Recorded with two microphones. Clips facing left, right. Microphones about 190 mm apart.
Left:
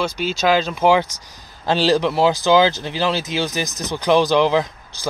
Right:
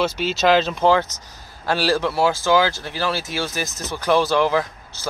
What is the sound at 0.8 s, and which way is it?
Speech, 10° left (ahead or behind).